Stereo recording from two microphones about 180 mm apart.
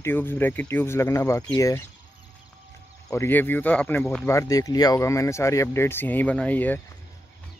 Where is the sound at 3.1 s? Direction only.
15° left (ahead or behind).